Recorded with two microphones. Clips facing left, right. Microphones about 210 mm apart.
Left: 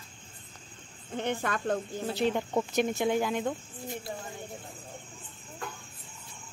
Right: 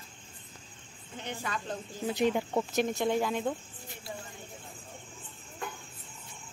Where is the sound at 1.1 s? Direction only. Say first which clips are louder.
Left 7 dB; 55° left (ahead or behind).